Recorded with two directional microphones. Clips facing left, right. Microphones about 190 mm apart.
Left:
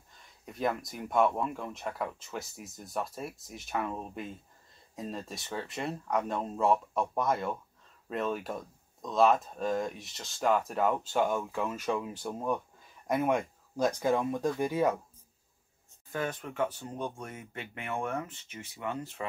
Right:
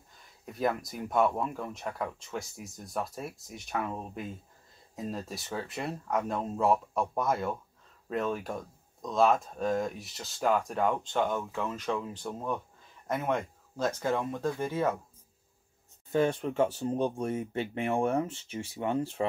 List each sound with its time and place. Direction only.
0.5 s speech: centre (ahead or behind)
16.1 s speech: 25° right (ahead or behind)